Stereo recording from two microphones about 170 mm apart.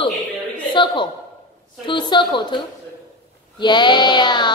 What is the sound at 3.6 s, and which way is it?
Child singing, 25° left (ahead or behind).